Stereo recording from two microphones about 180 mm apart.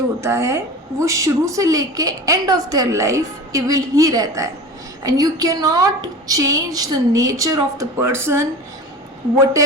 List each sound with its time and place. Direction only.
0.2 s a woman's voice: 15° right (ahead or behind)